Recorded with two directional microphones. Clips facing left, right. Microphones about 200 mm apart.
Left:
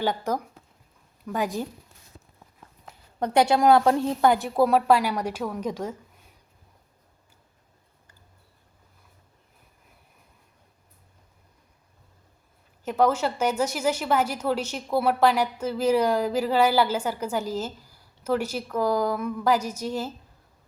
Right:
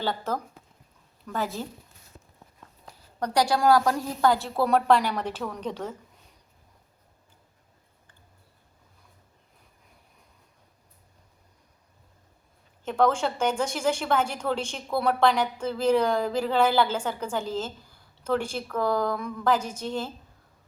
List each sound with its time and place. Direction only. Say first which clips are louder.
0.0 s a woman's voice: left 3 dB; 15° left (ahead or behind)
2.8 s a woman's voice: left 2 dB; 20° left (ahead or behind)
12.8 s a woman's voice: left 1 dB; 5° left (ahead or behind)